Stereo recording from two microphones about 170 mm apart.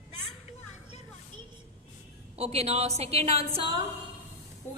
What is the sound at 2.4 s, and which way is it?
Speech, 35° right (ahead or behind).